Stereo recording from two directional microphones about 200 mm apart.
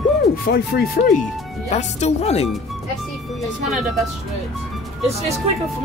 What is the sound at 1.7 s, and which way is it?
Speech, 35° left (ahead or behind).